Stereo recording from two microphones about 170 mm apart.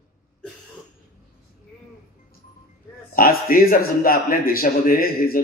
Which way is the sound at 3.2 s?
55° left (ahead or behind).